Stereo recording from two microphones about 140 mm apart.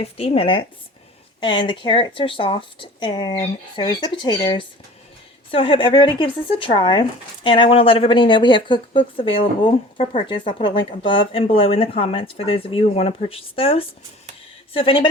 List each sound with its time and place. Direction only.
0.0 s speech: 45° left (ahead or behind)